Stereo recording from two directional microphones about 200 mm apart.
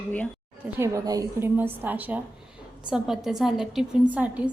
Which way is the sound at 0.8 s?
15° right (ahead or behind).